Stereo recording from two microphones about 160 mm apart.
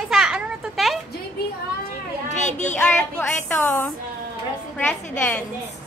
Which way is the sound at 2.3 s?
45° left (ahead or behind).